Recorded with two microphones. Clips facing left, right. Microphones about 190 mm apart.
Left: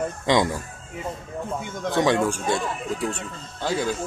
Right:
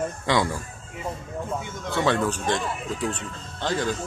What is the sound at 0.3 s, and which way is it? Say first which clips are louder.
Speech: left 3 dB; 20° left (ahead or behind).